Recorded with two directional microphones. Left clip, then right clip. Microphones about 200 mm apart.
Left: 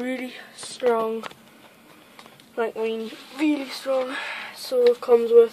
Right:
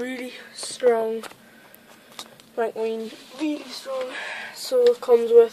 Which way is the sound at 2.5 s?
5° left (ahead or behind).